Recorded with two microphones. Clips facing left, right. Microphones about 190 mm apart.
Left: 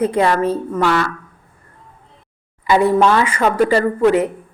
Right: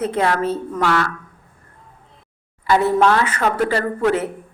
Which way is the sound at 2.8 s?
10° left (ahead or behind).